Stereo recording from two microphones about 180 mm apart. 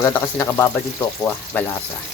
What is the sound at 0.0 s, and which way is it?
Speech, 10° left (ahead or behind).